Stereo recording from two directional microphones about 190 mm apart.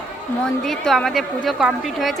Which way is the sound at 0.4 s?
Centre (ahead or behind).